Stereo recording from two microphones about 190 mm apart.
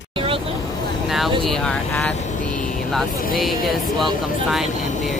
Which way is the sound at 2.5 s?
45° left (ahead or behind).